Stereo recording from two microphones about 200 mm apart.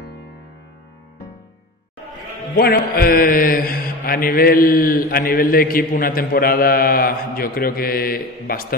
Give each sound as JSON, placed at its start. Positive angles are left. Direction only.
{"t": 3.0, "sound": "mantra", "side_deg": 45}